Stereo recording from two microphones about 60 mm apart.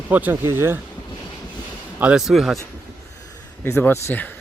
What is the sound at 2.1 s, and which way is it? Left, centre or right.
Speech, centre.